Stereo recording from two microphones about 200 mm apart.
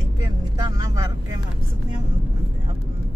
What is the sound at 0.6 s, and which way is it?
Vehicle, 20° right (ahead or behind).